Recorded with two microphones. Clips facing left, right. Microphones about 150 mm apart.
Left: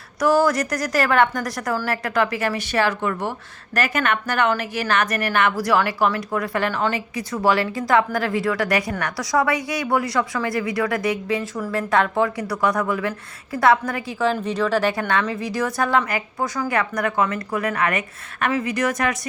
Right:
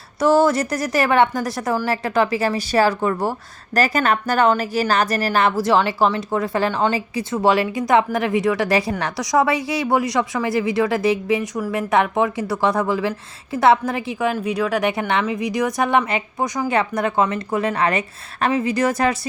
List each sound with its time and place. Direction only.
0.2 s a woman's voice: 25° right (ahead or behind)
14.3 s a woman's voice: 10° right (ahead or behind); by 19.3 s 30° right (ahead or behind)